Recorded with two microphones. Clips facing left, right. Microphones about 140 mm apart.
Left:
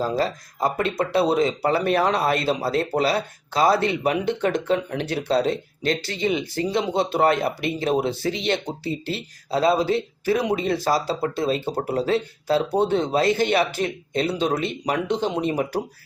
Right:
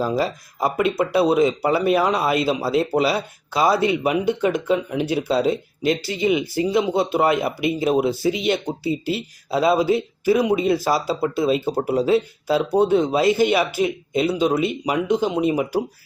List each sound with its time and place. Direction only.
0.0 s speech: 10° right (ahead or behind)